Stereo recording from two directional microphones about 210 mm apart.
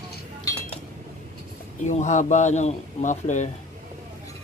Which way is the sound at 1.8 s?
35° left (ahead or behind).